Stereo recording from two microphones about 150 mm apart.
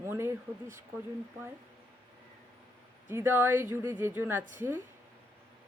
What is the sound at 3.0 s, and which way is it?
A woman's voice, 15° right (ahead or behind).